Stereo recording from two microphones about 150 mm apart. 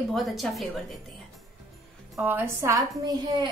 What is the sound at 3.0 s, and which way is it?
Speech, 30° right (ahead or behind).